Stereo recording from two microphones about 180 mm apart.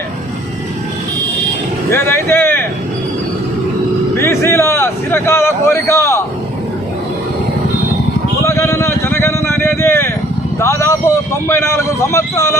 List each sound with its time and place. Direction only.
1.9 s speech: 15° left (ahead or behind)
4.2 s speech: 15° left (ahead or behind)
8.4 s a sound: 15° left (ahead or behind)
10.6 s a man's voice: 15° left (ahead or behind)